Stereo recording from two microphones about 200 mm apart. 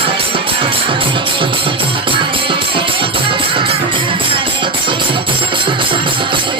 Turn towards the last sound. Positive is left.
turn(degrees=-25)  # may be behind; listen again after turning